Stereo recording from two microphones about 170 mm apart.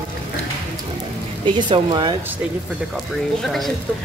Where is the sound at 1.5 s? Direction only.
30° right (ahead or behind).